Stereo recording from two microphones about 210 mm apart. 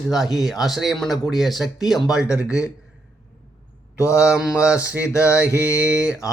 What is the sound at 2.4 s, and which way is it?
Speech, 15° left (ahead or behind).